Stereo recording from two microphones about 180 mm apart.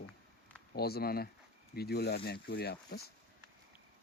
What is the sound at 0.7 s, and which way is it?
Speech, 60° left (ahead or behind).